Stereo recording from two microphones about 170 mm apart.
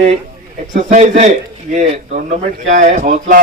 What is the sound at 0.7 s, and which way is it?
A man's voice, 50° right (ahead or behind).